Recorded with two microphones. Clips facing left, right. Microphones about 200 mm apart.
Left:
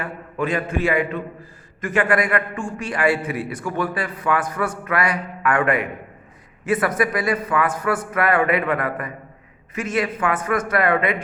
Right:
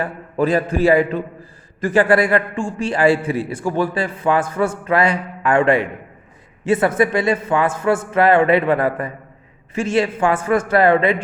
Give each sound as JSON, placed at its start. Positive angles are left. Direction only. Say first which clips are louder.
{"t": 0.0, "sound": "a man's voice", "louder": "right 6 dB", "side_deg": -35}